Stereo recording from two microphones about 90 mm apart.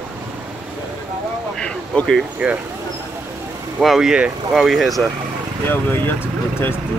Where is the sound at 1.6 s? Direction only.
10° left (ahead or behind).